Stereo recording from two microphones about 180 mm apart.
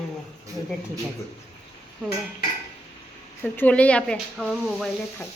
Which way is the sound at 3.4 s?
10° left (ahead or behind).